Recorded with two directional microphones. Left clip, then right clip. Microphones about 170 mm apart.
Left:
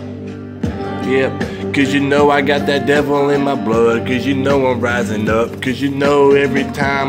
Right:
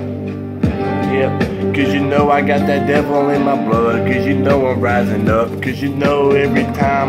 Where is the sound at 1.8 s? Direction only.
50° left (ahead or behind).